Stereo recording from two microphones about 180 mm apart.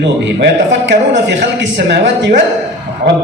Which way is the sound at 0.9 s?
80° right.